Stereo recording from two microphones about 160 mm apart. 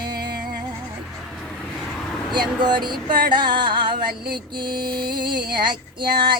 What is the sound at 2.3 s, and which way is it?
Music, 25° right (ahead or behind).